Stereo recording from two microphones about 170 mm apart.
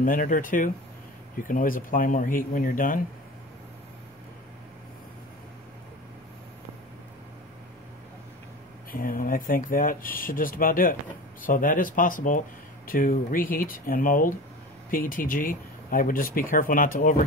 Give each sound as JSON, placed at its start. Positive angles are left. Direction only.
{"t": 0.0, "sound": "speech", "side_deg": 55}
{"t": 8.9, "sound": "speech", "side_deg": 55}